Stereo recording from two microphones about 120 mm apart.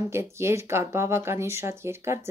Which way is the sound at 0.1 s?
20° right (ahead or behind).